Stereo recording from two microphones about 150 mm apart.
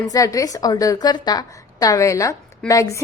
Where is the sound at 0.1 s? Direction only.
25° left (ahead or behind).